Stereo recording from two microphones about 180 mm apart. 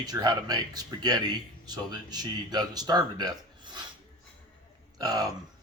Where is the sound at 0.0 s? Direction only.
20° right (ahead or behind).